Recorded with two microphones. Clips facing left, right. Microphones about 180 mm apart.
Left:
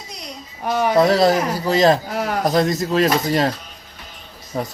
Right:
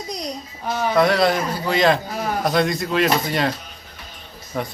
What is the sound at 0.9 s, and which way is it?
Speech, 35° left (ahead or behind).